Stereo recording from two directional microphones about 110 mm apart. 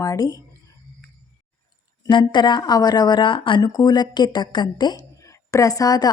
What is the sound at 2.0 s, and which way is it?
A woman's voice, 45° left (ahead or behind).